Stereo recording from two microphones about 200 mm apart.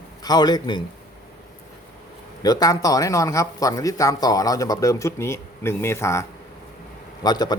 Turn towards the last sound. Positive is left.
turn(degrees=20)  # may be behind; listen again after turning